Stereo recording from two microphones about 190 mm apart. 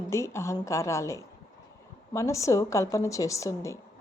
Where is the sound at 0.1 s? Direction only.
15° left (ahead or behind).